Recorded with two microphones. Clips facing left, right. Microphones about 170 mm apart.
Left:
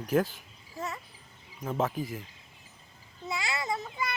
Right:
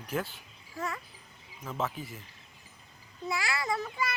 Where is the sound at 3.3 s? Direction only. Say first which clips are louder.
Right 1 dB; 20° left (ahead or behind).